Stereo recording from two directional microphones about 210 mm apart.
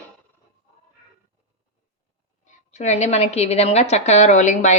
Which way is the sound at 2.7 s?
35° left (ahead or behind).